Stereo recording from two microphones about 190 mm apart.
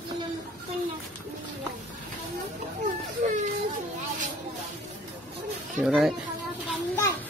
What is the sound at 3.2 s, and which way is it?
Whimper, 40° right (ahead or behind).